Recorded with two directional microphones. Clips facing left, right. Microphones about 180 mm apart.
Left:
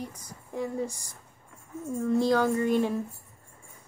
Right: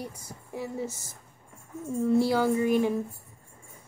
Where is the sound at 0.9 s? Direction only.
20° right (ahead or behind).